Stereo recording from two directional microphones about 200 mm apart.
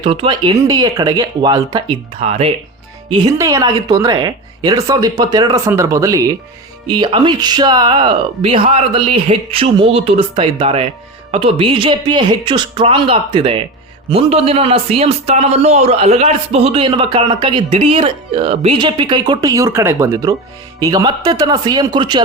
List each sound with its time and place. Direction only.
0.0 s a man's voice: 25° right (ahead or behind)
3.1 s a man's voice: 15° right (ahead or behind)